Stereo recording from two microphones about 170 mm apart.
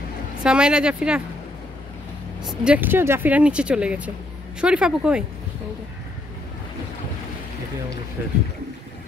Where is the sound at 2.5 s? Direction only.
10° right (ahead or behind).